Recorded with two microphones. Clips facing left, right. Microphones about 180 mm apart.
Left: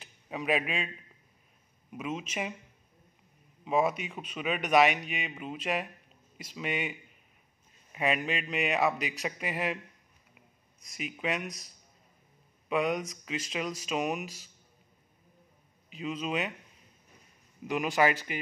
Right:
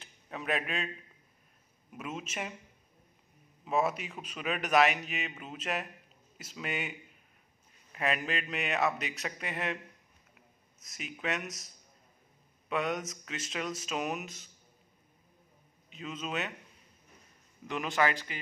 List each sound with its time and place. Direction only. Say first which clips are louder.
0.0 s a sound: left 4 dB; 5° left (ahead or behind)
2.1 s speech: left 1 dB; centre (ahead or behind)
3.6 s a man's voice: left 3 dB; 5° right (ahead or behind)
11.0 s speech: left 3 dB; centre (ahead or behind)
12.6 s speech: left 4 dB; centre (ahead or behind)
15.9 s speech: left 5 dB; centre (ahead or behind)
17.6 s a man's voice: left 3 dB; 15° left (ahead or behind)